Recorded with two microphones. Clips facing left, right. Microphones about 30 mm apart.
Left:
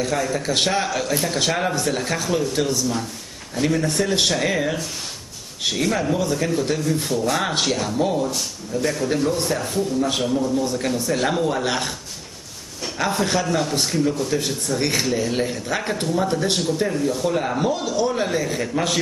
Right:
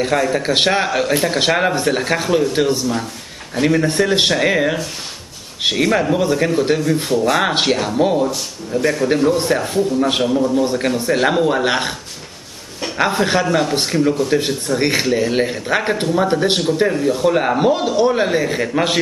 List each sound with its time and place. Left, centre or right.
0.0 s speech: right